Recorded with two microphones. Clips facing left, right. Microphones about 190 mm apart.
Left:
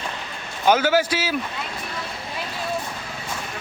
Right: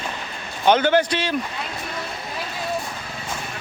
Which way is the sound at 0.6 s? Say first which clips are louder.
Right 1 dB; 5° left (ahead or behind).